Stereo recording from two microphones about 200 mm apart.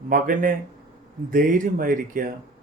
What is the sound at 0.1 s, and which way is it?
Speech, 45° right (ahead or behind).